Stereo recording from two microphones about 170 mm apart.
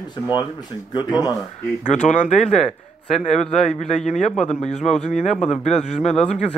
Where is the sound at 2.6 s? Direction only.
Centre (ahead or behind).